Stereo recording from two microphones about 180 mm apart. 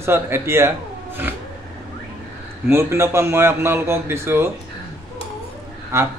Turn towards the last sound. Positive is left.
turn(degrees=-15)  # may be behind; listen again after turning